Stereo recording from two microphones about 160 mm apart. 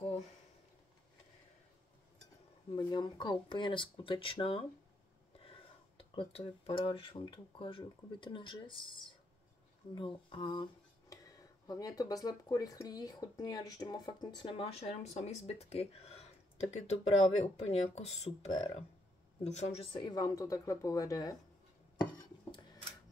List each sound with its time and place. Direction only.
2.7 s speech: 25° left (ahead or behind)